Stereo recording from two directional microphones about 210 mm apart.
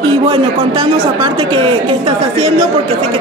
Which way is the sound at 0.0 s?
25° right (ahead or behind).